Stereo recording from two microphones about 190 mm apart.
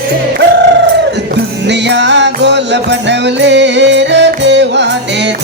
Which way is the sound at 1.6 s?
65° right (ahead or behind).